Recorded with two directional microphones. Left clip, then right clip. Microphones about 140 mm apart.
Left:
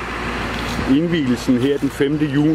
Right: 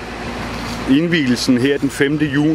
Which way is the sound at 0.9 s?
10° right (ahead or behind).